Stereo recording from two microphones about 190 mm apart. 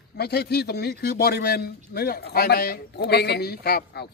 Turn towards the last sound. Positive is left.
turn(degrees=55)  # may be behind; listen again after turning